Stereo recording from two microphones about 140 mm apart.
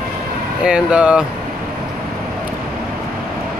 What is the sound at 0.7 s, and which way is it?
Speech, 5° right (ahead or behind).